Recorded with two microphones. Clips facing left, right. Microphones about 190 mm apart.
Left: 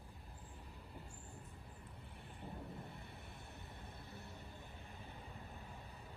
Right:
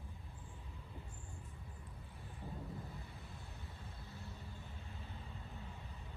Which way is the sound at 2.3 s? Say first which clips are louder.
Right 2 dB; 60° left (ahead or behind).